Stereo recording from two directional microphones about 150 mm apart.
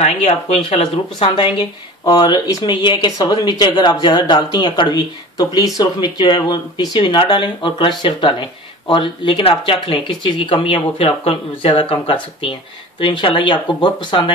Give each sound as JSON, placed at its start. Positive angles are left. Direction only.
{"t": 0.0, "sound": "speech", "side_deg": 45}